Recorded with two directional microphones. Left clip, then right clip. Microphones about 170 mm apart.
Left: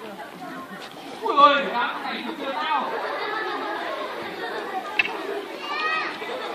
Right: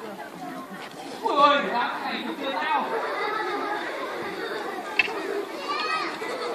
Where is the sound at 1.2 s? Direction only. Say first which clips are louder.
Left 3 dB; 35° right (ahead or behind).